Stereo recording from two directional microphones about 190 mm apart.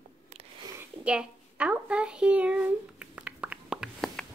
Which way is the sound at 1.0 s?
5° right (ahead or behind).